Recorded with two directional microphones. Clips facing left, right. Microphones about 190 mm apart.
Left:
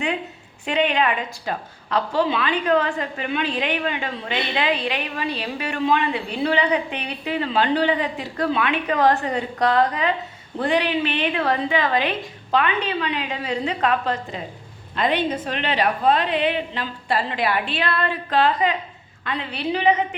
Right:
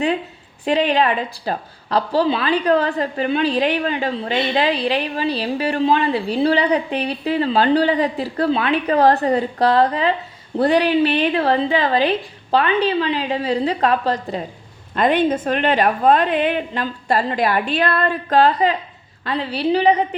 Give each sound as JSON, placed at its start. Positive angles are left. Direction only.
{"t": 0.6, "sound": "a woman's voice", "side_deg": -35}
{"t": 14.9, "sound": "a woman's voice", "side_deg": -50}